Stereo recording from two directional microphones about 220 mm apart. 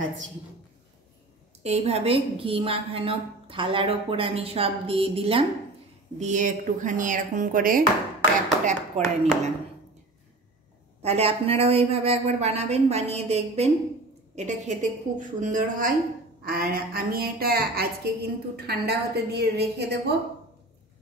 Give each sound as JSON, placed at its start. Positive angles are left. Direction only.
{"t": 1.6, "sound": "a woman's voice", "side_deg": -30}
{"t": 6.1, "sound": "chopping", "side_deg": -35}
{"t": 11.0, "sound": "a woman's voice", "side_deg": -30}
{"t": 14.3, "sound": "chopping", "side_deg": -30}
{"t": 16.4, "sound": "a woman's voice", "side_deg": -40}